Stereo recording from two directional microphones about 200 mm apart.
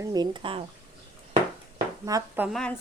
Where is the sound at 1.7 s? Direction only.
15° right (ahead or behind).